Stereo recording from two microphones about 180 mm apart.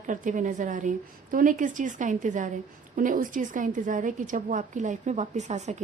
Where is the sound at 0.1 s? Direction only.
45° right (ahead or behind).